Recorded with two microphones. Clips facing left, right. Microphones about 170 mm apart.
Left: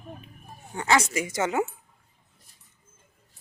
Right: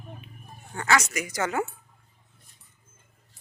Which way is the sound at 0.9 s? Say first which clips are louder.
Left 1 dB; 25° left (ahead or behind).